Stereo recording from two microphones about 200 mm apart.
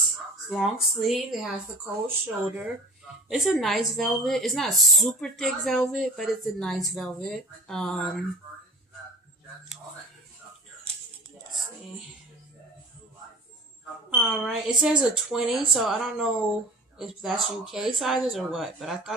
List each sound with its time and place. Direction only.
0.5 s a woman's voice: centre (ahead or behind)
14.1 s a woman's voice: centre (ahead or behind)